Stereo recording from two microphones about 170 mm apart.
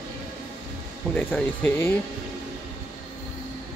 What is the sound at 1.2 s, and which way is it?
Speech, 10° left (ahead or behind).